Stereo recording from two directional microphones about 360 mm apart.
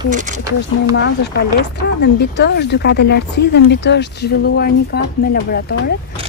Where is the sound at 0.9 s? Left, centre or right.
Left.